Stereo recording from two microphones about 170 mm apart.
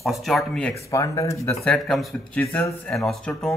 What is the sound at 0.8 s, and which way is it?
Speech, 20° left (ahead or behind).